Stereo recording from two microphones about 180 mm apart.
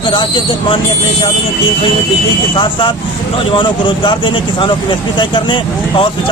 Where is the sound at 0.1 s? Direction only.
25° left (ahead or behind).